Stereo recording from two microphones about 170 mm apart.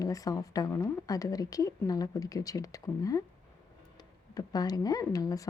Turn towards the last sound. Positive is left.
turn(degrees=20)  # may be behind; listen again after turning